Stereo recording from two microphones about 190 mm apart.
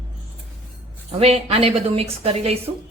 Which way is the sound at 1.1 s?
30° right (ahead or behind).